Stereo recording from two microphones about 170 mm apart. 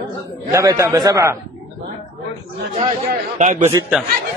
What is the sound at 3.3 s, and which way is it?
Speech, 45° right (ahead or behind).